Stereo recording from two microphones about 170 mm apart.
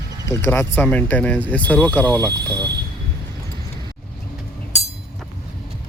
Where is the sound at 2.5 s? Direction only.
25° right (ahead or behind).